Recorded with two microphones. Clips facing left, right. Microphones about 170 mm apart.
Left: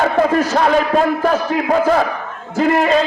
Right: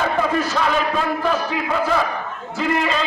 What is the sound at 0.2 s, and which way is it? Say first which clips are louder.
A man's voice: left 6 dB; 45° left (ahead or behind).